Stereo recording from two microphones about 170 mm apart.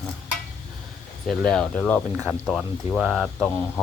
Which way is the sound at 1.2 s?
5° left (ahead or behind).